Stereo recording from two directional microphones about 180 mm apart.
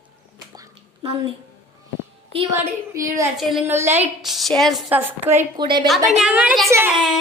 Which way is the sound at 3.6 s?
15° right (ahead or behind).